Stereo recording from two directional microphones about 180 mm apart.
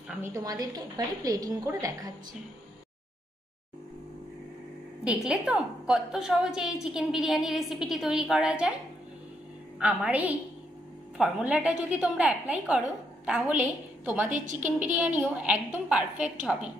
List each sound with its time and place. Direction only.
0.2 s a woman's voice: 20° right (ahead or behind)
5.0 s a woman's voice: 5° right (ahead or behind)
9.8 s a woman's voice: 10° right (ahead or behind)
14.3 s a woman's voice: 45° right (ahead or behind)
15.1 s a woman's voice: 5° right (ahead or behind)